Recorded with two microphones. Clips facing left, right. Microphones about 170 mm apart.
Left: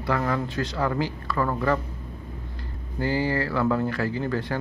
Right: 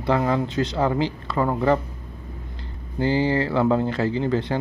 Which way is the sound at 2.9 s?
25° right (ahead or behind).